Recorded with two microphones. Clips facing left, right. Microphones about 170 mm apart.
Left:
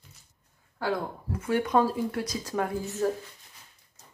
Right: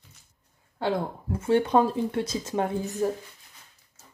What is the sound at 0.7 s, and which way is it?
Speech, 25° right (ahead or behind).